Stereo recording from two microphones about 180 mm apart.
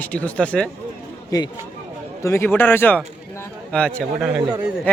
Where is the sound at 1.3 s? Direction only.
20° left (ahead or behind).